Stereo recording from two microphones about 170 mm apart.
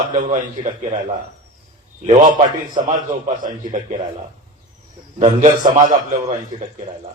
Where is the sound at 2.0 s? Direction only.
40° right (ahead or behind).